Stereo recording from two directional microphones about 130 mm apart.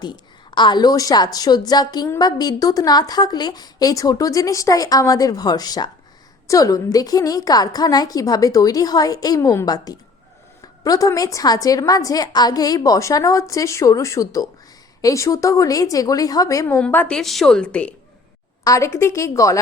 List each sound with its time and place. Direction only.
0.0 s a woman's voice: 35° left (ahead or behind)
16.8 s a woman's voice: 10° left (ahead or behind)
18.6 s a woman's voice: 25° left (ahead or behind)